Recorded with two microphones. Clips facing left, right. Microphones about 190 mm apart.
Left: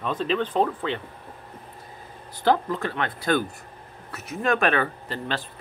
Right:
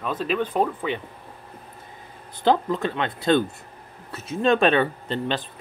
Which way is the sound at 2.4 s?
20° right (ahead or behind).